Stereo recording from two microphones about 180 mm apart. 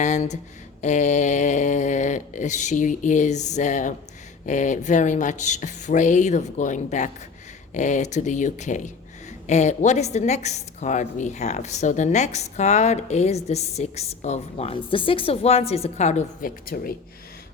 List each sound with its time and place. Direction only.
0.0 s a woman's voice: 40° left (ahead or behind)
16.7 s speech: 55° left (ahead or behind)